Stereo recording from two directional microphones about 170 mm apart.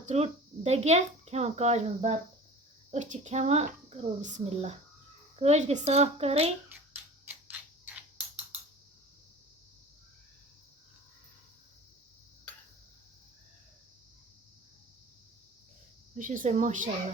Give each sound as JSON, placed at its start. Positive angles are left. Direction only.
{"t": 0.0, "sound": "speech", "side_deg": -40}
{"t": 16.1, "sound": "a woman's voice", "side_deg": -50}